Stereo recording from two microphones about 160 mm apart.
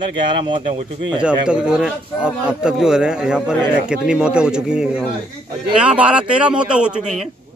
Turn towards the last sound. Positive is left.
turn(degrees=-5)  # may be behind; listen again after turning